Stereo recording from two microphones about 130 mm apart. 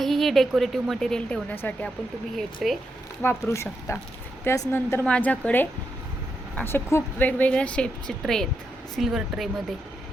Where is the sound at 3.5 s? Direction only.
20° left (ahead or behind).